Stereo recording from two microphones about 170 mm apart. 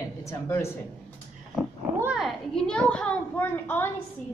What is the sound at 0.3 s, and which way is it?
Speech, 15° left (ahead or behind).